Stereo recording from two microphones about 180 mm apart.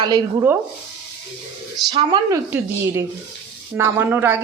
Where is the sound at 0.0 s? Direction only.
20° right (ahead or behind).